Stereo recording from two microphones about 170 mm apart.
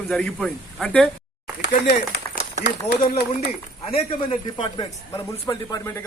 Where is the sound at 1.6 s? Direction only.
80° left.